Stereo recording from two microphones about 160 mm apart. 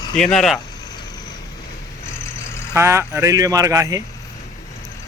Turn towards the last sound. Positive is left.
turn(degrees=-20)  # may be behind; listen again after turning